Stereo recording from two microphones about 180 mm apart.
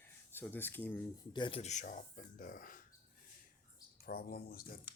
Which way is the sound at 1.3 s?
30° left (ahead or behind).